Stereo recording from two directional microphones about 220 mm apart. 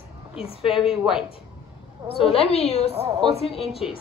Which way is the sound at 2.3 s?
25° left (ahead or behind).